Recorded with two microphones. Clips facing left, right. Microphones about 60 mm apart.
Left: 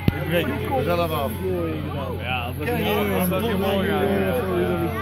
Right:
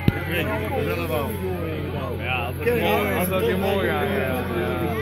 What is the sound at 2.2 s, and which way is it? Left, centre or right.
Vehicle, right.